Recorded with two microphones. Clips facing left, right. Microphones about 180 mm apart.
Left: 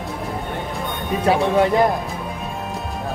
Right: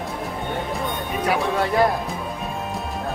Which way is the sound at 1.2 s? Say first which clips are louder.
Left 6 dB; 25° left (ahead or behind).